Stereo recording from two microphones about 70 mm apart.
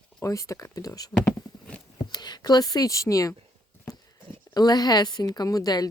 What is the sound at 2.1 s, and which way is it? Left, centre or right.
Speech, left.